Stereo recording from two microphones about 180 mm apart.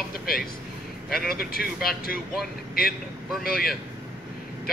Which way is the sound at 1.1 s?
55° left (ahead or behind).